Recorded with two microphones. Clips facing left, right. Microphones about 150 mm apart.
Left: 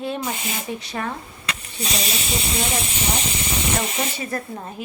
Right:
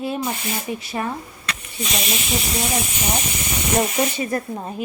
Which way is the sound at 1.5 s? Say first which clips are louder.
Even; 35° left (ahead or behind).